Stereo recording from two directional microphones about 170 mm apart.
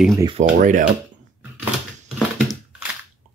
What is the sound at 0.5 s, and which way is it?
Speech, 50° right (ahead or behind).